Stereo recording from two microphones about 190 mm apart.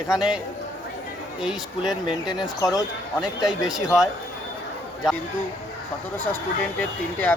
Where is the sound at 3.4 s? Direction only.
5° right (ahead or behind).